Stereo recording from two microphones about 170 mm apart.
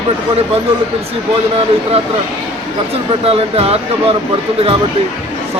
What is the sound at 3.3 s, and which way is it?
Speech, 35° right (ahead or behind).